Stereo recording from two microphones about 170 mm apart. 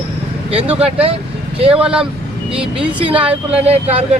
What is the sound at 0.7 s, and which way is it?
Speech, 35° right (ahead or behind).